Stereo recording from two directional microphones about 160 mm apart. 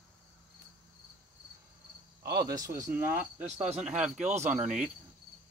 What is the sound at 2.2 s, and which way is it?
Cricket, 85° right.